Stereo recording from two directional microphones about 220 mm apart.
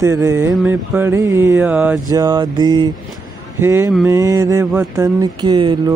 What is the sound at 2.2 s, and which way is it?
Mantra, 20° right (ahead or behind).